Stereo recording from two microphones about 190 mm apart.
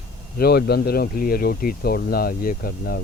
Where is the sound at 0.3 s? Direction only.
55° left (ahead or behind).